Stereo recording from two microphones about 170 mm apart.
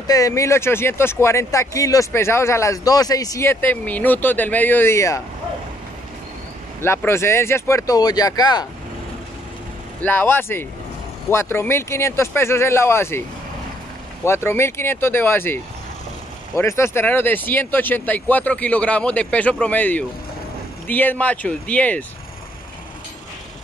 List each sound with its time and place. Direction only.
0.0 s speech: 20° left (ahead or behind)
6.8 s speech: 15° left (ahead or behind)
10.0 s speech: 10° left (ahead or behind)
14.2 s speech: 15° left (ahead or behind)